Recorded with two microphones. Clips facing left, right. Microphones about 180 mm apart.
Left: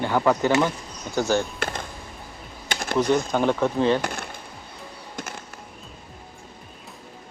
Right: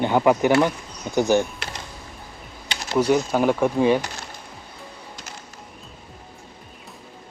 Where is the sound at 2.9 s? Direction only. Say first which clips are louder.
Right 2 dB; 10° right (ahead or behind).